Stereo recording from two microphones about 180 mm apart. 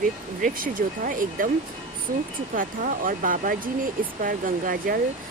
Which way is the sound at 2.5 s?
50° right (ahead or behind).